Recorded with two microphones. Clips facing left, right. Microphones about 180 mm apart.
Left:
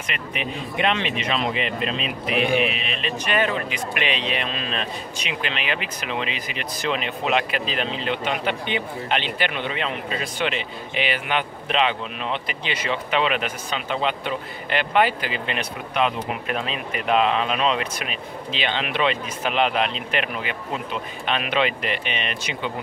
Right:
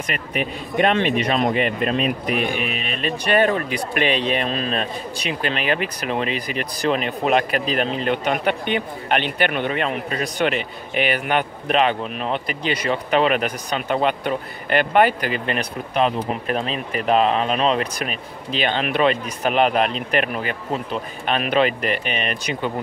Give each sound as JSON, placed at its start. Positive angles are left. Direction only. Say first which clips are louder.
{"t": 0.1, "sound": "speech", "louder": "right 3 dB", "side_deg": -45}